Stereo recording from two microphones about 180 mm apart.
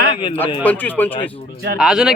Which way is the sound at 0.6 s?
10° left (ahead or behind).